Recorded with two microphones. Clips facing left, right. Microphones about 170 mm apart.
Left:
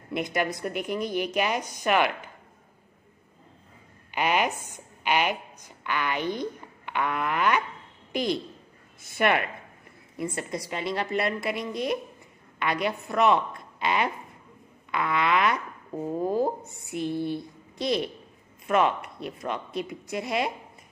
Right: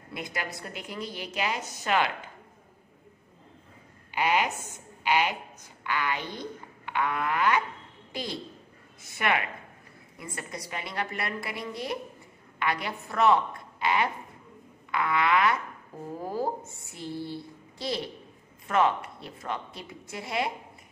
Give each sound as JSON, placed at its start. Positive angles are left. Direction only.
{"t": 0.2, "sound": "a woman's voice", "side_deg": 20}
{"t": 4.2, "sound": "a woman's voice", "side_deg": 20}
{"t": 10.1, "sound": "a woman's voice", "side_deg": 25}